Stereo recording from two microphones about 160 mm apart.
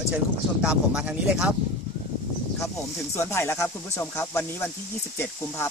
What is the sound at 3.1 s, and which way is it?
Speech, 15° left (ahead or behind).